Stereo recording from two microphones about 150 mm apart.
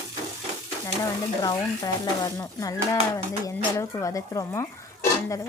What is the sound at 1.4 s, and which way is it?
Speech, 25° left (ahead or behind).